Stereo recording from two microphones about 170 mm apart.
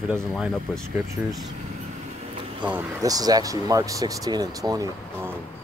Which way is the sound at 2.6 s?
15° right (ahead or behind).